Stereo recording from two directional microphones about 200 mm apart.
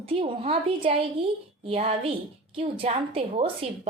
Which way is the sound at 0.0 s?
25° right (ahead or behind).